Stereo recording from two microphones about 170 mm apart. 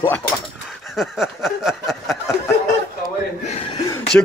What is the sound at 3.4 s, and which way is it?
Chuckle, 40° left (ahead or behind).